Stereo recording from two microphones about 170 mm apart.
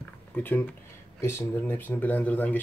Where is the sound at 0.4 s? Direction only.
10° left (ahead or behind).